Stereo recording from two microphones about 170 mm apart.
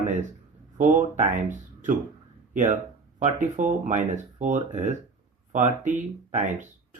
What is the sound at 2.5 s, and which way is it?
Speech, 50° right (ahead or behind).